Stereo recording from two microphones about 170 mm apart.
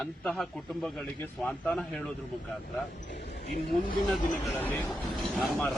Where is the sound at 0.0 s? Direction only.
5° left (ahead or behind).